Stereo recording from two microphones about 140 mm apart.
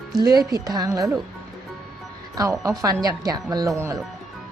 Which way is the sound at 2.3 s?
25° right (ahead or behind).